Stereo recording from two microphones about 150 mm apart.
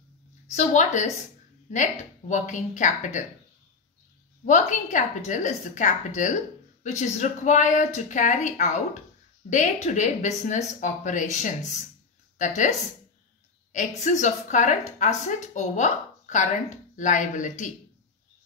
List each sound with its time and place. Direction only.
0.6 s a woman's voice: 50° left (ahead or behind)
4.5 s a woman's voice: 55° left (ahead or behind)